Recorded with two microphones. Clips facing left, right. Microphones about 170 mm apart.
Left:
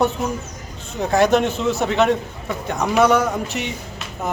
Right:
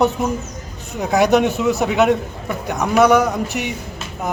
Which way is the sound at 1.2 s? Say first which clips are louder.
Right 2 dB; 15° right (ahead or behind).